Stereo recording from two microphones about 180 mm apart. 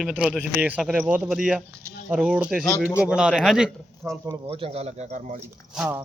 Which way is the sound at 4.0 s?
15° right (ahead or behind).